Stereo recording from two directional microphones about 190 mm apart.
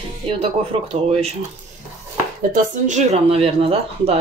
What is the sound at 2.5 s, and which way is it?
Speech, 40° right (ahead or behind).